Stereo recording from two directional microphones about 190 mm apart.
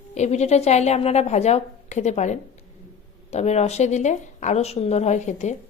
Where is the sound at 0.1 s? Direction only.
35° left (ahead or behind).